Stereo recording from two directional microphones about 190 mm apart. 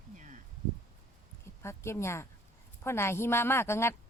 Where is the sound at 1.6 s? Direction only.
15° left (ahead or behind).